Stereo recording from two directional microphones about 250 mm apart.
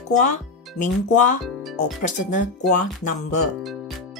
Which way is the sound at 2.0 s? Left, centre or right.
Left.